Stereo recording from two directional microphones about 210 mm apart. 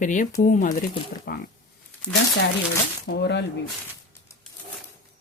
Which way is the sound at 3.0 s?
55° left (ahead or behind).